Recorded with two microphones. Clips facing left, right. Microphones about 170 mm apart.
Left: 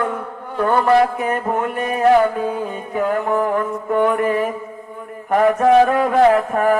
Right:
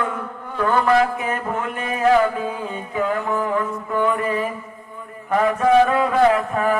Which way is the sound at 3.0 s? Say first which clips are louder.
Left 4 dB; 45° left (ahead or behind).